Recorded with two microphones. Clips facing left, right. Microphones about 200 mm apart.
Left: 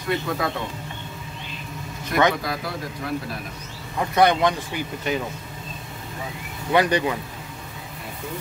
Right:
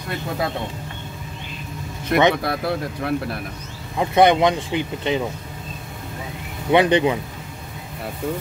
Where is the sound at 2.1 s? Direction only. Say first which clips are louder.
Right 3 dB; 60° right (ahead or behind).